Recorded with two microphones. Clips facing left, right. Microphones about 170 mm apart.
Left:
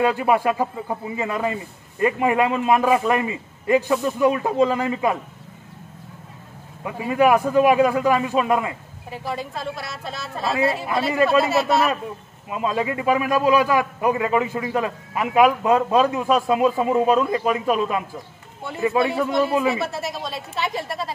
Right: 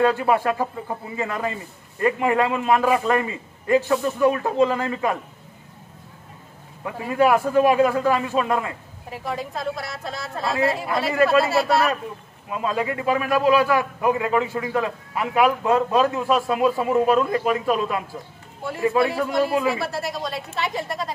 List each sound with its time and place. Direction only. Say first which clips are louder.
0.0 s a man's voice: even; 15° left (ahead or behind)
6.8 s a man's voice: left 1 dB; 15° left (ahead or behind)
9.2 s a woman's voice: right 1 dB; centre (ahead or behind)
10.9 s a man's voice: even; 25° left (ahead or behind)
19.7 s a woman's voice: left 1 dB; centre (ahead or behind)